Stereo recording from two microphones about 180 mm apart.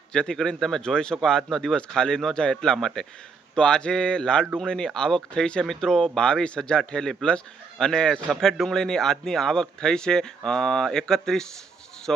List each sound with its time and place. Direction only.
0.1 s speech: 5° left (ahead or behind)